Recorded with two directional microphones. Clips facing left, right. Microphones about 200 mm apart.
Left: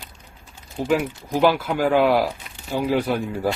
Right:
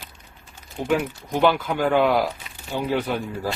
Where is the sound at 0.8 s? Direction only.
Centre (ahead or behind).